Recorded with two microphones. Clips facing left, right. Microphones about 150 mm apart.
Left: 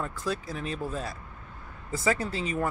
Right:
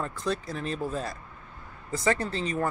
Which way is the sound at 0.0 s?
5° left (ahead or behind).